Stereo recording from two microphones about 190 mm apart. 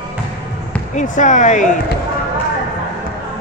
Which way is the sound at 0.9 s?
40° left (ahead or behind).